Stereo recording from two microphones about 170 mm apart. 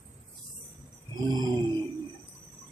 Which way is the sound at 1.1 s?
25° right (ahead or behind).